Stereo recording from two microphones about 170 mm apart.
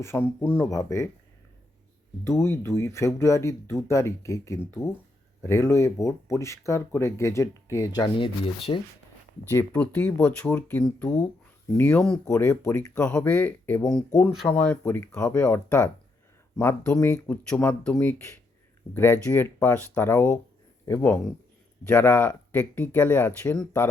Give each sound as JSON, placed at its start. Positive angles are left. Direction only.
{"t": 0.0, "sound": "speech", "side_deg": 15}
{"t": 2.2, "sound": "speech", "side_deg": 15}
{"t": 9.5, "sound": "speech", "side_deg": 10}